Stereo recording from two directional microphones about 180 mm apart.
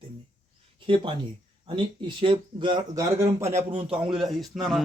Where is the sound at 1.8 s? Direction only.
30° right (ahead or behind).